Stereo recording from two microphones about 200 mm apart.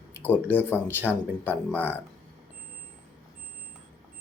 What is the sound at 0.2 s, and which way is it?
Speech, 10° left (ahead or behind).